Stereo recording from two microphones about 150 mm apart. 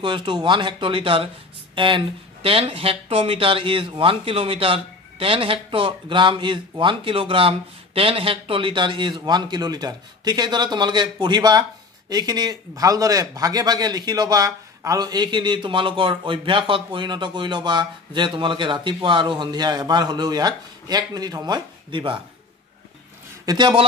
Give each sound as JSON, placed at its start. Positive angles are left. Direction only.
{"t": 0.0, "sound": "a man's voice", "side_deg": -30}
{"t": 23.4, "sound": "a man's voice", "side_deg": -25}